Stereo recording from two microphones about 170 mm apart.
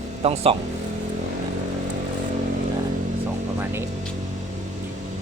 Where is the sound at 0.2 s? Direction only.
35° right (ahead or behind).